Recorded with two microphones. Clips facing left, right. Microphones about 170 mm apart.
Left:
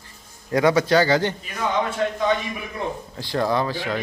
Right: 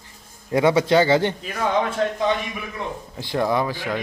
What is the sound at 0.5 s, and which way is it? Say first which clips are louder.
Speech: right 1 dB; 25° right (ahead or behind).